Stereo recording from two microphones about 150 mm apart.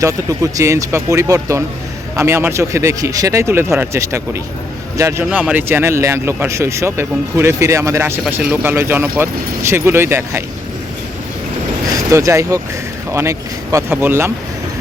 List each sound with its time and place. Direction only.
0.0 s speech: 20° right (ahead or behind)
5.2 s speech: 10° right (ahead or behind)
11.9 s speech: 20° right (ahead or behind)